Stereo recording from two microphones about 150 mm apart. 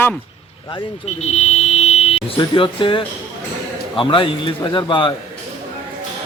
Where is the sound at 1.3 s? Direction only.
45° left (ahead or behind).